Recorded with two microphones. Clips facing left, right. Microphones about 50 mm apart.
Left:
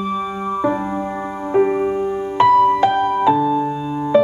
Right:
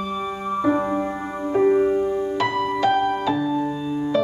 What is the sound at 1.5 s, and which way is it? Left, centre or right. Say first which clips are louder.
Music: left 1 dB; centre.